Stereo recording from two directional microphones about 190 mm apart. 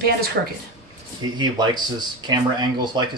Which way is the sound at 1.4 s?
20° right (ahead or behind).